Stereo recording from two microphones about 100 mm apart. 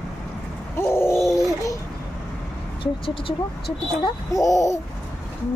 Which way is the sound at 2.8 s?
60° left (ahead or behind).